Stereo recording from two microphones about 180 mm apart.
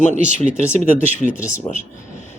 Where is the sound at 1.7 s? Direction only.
35° left (ahead or behind).